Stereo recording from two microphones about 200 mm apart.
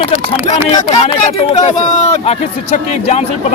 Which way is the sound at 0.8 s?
40° left (ahead or behind).